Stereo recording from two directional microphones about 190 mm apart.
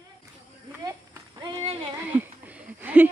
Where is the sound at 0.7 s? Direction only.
15° right (ahead or behind).